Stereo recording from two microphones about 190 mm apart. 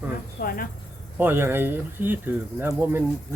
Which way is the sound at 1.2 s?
10° right (ahead or behind).